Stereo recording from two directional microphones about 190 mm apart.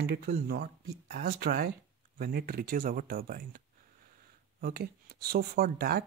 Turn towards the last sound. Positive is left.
turn(degrees=-55)  # may be behind; listen again after turning